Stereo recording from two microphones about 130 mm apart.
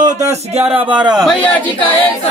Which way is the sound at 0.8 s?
35° right (ahead or behind).